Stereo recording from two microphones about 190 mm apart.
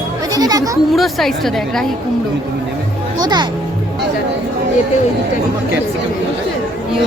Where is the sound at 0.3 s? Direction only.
20° right (ahead or behind).